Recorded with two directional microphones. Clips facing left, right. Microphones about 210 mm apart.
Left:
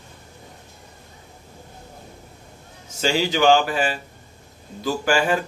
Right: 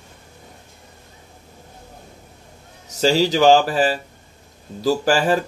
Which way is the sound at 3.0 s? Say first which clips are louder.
Right 4 dB; 35° right (ahead or behind).